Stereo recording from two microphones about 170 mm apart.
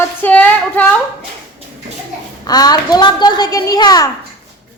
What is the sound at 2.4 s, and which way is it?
A woman's voice, 25° left (ahead or behind).